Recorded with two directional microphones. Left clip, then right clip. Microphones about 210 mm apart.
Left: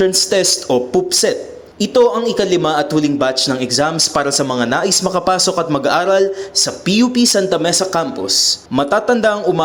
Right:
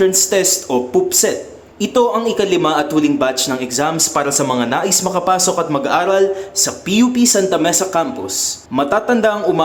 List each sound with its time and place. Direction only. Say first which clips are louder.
0.0 s a man's voice: even; 20° left (ahead or behind)